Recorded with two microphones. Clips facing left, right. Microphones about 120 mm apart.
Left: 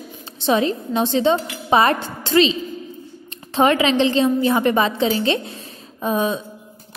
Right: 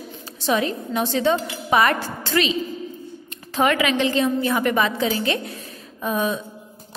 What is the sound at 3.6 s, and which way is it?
A woman's voice, 30° left (ahead or behind).